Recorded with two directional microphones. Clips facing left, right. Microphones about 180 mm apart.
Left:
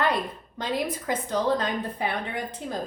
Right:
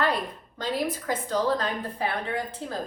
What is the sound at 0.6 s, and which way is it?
A woman's voice, 20° left (ahead or behind).